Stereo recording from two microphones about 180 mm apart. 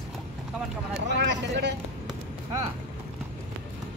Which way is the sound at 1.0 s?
75° right (ahead or behind).